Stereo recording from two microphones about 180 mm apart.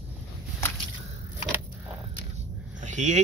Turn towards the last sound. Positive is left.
turn(degrees=-40)  # may be behind; listen again after turning